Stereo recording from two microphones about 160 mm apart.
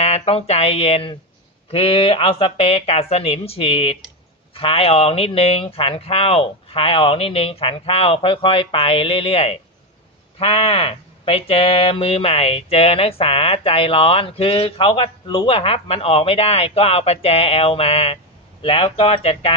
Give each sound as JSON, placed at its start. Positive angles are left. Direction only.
{"t": 0.0, "sound": "speech", "side_deg": 40}